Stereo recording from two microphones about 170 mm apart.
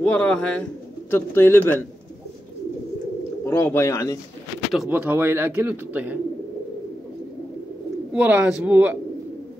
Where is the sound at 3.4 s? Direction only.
15° left (ahead or behind).